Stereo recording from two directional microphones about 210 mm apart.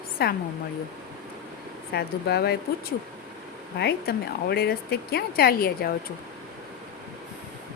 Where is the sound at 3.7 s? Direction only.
50° left (ahead or behind).